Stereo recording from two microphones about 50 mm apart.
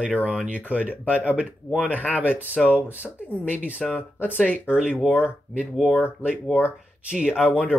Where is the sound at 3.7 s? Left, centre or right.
Left.